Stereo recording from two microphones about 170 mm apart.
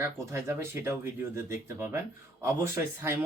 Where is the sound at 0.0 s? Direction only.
15° right (ahead or behind).